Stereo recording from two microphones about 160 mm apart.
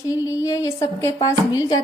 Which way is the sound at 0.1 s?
20° left (ahead or behind).